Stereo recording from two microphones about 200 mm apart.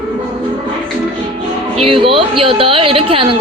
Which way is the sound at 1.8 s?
25° right (ahead or behind).